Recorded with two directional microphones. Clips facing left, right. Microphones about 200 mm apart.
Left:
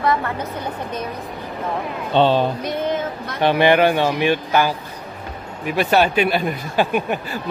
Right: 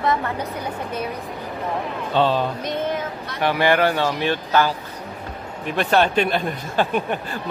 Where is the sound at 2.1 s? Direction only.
25° left (ahead or behind).